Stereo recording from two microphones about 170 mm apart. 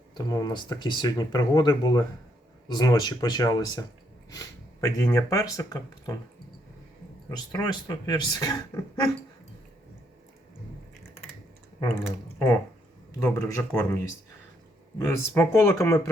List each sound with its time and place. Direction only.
0.1 s speech: 25° left (ahead or behind)
7.3 s speech: 20° left (ahead or behind)
12.0 s speech: 15° left (ahead or behind)
14.9 s speech: 15° left (ahead or behind)